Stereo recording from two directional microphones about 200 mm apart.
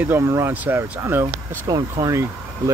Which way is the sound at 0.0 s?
10° right (ahead or behind).